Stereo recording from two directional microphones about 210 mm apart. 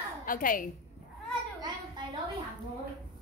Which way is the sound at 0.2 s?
40° left (ahead or behind).